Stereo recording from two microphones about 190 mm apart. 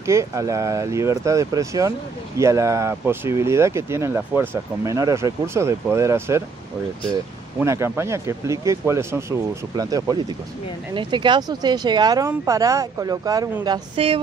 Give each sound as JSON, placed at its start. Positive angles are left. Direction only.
{"t": 0.0, "sound": "speech", "side_deg": -15}
{"t": 7.5, "sound": "speech", "side_deg": -15}
{"t": 13.9, "sound": "speech", "side_deg": -30}